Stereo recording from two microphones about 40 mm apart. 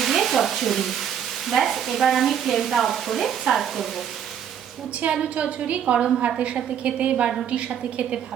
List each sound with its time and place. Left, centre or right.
0.0 s stir: centre
1.5 s speech: centre
5.0 s a woman's voice: right